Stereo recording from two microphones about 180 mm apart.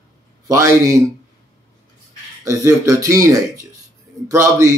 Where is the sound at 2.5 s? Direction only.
15° right (ahead or behind).